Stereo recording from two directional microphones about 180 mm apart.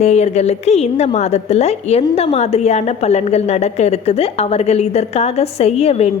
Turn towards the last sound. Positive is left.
turn(degrees=35)  # may be behind; listen again after turning